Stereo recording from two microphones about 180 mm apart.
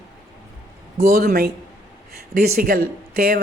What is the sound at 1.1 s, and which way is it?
Speech, 60° right (ahead or behind).